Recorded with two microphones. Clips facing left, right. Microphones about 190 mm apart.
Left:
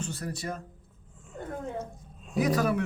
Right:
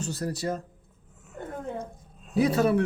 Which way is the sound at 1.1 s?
5° right (ahead or behind).